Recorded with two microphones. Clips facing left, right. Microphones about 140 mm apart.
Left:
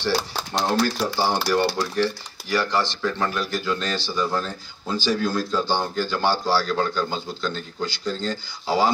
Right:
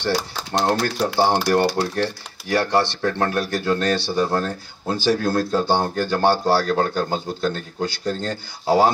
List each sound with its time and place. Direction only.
0.0 s speech: 60° right (ahead or behind)